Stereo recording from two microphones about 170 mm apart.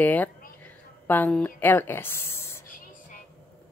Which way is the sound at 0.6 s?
10° left (ahead or behind).